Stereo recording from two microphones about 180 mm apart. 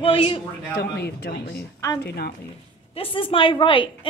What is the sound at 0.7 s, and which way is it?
Speech, 60° left (ahead or behind).